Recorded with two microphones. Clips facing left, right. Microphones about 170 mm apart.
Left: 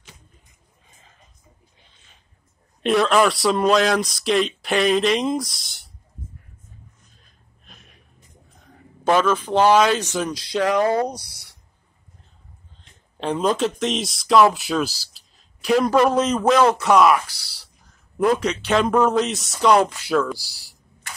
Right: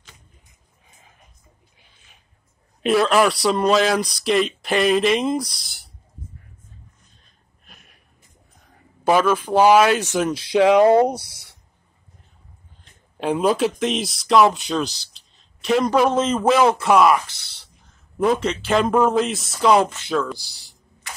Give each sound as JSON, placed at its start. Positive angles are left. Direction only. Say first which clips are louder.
{"t": 2.8, "sound": "speech", "louder": "even", "side_deg": 0}
{"t": 7.6, "sound": "gasp", "louder": "left 1 dB", "side_deg": -5}
{"t": 9.0, "sound": "speech", "louder": "right 1 dB", "side_deg": -10}
{"t": 13.2, "sound": "speech", "louder": "right 2 dB", "side_deg": -5}